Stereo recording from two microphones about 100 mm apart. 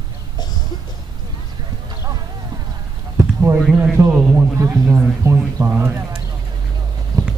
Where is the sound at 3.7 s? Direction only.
20° right (ahead or behind).